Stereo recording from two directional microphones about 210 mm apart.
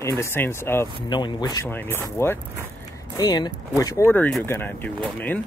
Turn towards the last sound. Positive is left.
turn(degrees=10)  # may be behind; listen again after turning